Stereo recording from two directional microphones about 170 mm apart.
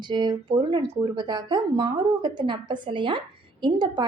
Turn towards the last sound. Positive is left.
turn(degrees=-25)  # may be behind; listen again after turning